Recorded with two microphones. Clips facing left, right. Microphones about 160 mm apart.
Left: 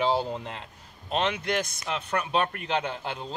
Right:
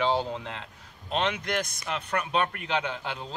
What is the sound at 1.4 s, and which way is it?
Speech, 25° left (ahead or behind).